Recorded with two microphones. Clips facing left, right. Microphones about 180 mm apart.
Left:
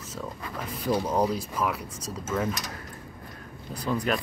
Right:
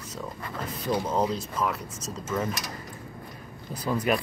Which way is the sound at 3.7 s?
5° right (ahead or behind).